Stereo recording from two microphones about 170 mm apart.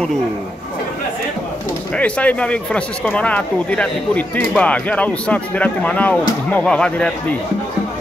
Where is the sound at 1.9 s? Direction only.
5° left (ahead or behind).